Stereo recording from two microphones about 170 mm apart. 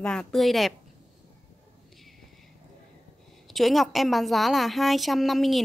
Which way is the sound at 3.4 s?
Centre (ahead or behind).